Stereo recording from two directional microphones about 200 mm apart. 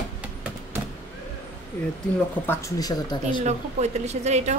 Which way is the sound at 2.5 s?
15° left (ahead or behind).